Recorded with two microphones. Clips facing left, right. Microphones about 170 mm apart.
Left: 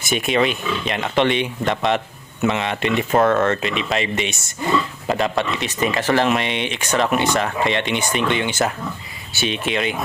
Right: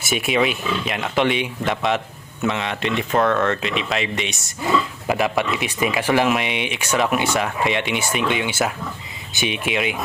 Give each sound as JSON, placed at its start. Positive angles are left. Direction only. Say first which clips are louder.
{"t": 0.0, "sound": "speech", "louder": "left 1 dB", "side_deg": -5}